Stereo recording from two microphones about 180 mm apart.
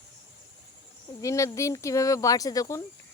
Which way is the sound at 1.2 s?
15° left (ahead or behind).